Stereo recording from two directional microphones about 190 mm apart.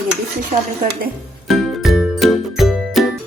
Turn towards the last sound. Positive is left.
turn(degrees=0)  # may be behind; listen again after turning